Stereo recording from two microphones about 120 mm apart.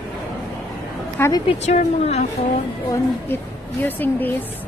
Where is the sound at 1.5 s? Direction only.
65° left (ahead or behind).